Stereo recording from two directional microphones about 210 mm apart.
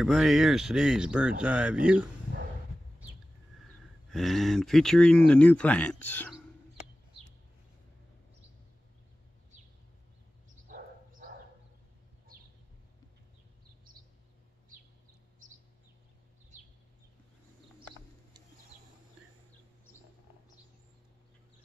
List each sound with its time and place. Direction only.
0.0 s speech: centre (ahead or behind)
4.1 s speech: centre (ahead or behind)
10.7 s dog: 40° right (ahead or behind)